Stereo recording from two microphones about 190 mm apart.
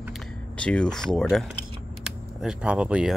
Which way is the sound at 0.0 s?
Centre (ahead or behind).